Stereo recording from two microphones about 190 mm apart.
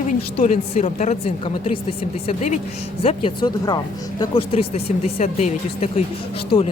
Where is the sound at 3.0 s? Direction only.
25° left (ahead or behind).